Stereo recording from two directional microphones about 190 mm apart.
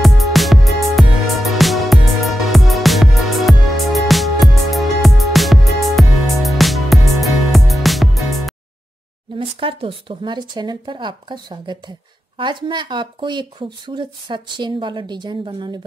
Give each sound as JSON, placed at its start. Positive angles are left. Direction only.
{"t": 0.0, "sound": "music", "side_deg": 0}
{"t": 9.4, "sound": "speech", "side_deg": -30}